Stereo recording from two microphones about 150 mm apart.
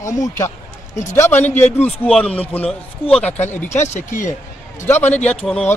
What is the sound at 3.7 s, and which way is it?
Speech, 50° left (ahead or behind).